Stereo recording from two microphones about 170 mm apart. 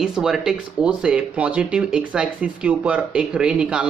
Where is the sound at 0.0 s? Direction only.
5° right (ahead or behind).